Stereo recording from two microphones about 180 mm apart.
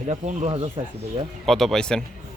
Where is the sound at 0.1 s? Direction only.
35° right (ahead or behind).